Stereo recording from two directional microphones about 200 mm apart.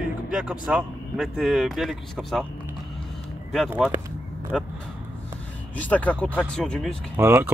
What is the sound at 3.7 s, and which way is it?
Speech, 10° right (ahead or behind).